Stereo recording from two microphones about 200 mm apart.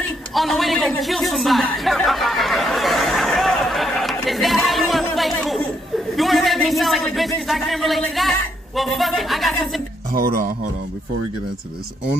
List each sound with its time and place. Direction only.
0.0 s chuckle: centre (ahead or behind)
5.1 s a sound: centre (ahead or behind)
10.1 s speech: 50° right (ahead or behind)